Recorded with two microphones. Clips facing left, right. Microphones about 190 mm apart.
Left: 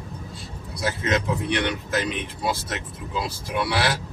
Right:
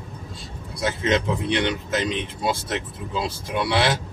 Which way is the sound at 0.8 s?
25° right (ahead or behind).